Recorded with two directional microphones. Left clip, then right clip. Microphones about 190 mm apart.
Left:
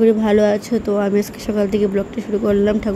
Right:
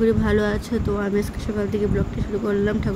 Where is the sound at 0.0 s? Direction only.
15° left (ahead or behind).